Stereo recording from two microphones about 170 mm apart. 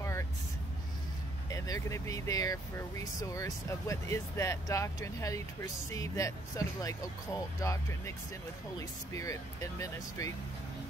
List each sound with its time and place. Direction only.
0.0 s vehicle: 15° left (ahead or behind)
1.5 s speech: 20° left (ahead or behind)